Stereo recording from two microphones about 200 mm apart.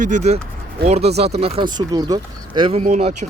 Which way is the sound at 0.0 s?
35° right (ahead or behind).